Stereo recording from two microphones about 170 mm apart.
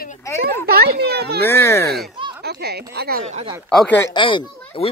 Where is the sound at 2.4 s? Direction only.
70° right (ahead or behind).